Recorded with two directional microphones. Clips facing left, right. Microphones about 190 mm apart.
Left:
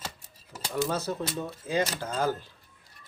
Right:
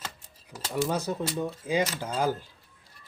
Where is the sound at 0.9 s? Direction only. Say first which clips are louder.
Right 1 dB; 15° right (ahead or behind).